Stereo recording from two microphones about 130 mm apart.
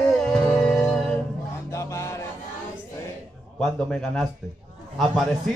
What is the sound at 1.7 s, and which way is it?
Music, 25° left (ahead or behind).